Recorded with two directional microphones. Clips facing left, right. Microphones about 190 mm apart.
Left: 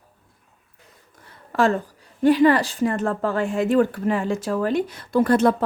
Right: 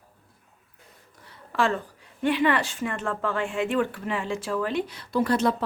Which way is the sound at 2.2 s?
40° left (ahead or behind).